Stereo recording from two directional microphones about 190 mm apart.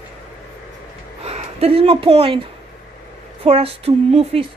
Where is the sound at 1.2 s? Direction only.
35° right (ahead or behind).